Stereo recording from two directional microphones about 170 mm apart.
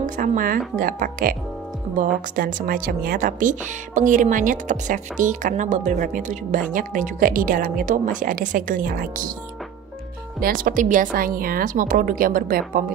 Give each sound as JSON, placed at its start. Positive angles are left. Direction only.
{"t": 0.0, "sound": "a woman's voice", "side_deg": -50}
{"t": 10.4, "sound": "a woman's voice", "side_deg": -55}